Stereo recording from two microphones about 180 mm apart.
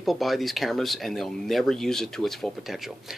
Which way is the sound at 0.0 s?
Centre (ahead or behind).